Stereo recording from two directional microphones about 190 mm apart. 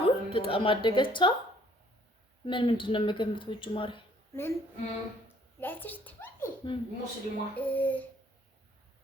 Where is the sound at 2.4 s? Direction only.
25° left (ahead or behind).